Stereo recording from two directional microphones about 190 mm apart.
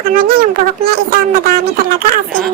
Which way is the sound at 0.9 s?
50° right (ahead or behind).